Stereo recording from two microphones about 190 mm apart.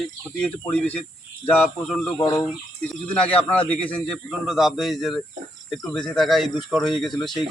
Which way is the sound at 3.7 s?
5° left (ahead or behind).